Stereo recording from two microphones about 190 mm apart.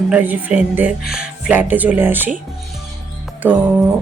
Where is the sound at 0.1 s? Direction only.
10° right (ahead or behind).